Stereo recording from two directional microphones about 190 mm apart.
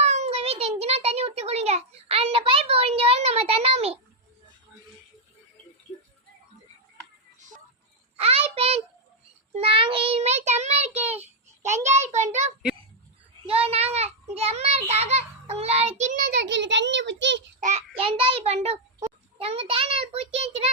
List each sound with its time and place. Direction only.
0.0 s a sound: 35° right (ahead or behind)
8.2 s a sound: 30° right (ahead or behind)
9.6 s a child's voice: 30° right (ahead or behind)
13.5 s a child's voice: 30° right (ahead or behind)
16.3 s a child's voice: 70° right (ahead or behind)
17.6 s a child's voice: 35° right (ahead or behind)